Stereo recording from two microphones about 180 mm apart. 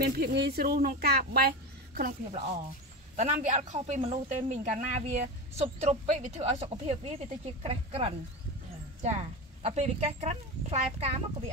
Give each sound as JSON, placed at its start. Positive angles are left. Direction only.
{"t": 0.0, "sound": "speech", "side_deg": -60}
{"t": 3.2, "sound": "speech", "side_deg": -40}